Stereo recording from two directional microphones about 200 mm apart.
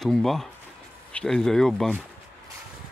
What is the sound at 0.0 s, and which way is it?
Speech, centre (ahead or behind).